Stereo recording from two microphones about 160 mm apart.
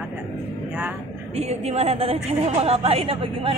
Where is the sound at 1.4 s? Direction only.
40° right (ahead or behind).